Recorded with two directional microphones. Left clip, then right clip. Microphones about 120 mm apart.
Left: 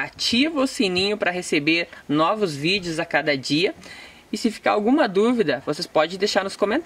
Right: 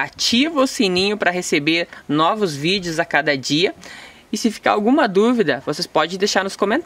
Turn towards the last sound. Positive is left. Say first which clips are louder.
# right 3 dB
turn(degrees=-40)  # may be behind; listen again after turning